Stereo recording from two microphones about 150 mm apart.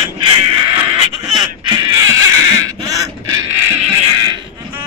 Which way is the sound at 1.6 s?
30° right (ahead or behind).